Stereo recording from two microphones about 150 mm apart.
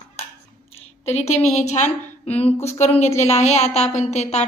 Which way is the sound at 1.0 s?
45° left (ahead or behind).